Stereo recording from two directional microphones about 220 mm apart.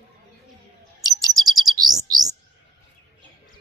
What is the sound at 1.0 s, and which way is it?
Bird, 15° right (ahead or behind).